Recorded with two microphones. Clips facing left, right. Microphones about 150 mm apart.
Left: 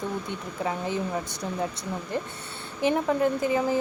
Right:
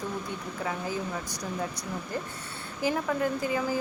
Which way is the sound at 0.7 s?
25° left (ahead or behind).